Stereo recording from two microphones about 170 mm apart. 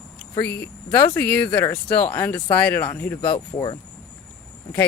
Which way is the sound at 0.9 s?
15° left (ahead or behind).